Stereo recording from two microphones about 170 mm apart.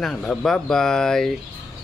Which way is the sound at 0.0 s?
5° left (ahead or behind).